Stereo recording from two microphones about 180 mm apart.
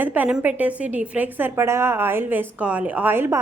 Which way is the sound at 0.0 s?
10° right (ahead or behind).